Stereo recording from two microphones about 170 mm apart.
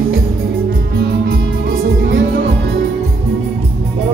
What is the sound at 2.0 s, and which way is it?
Music, 90° right.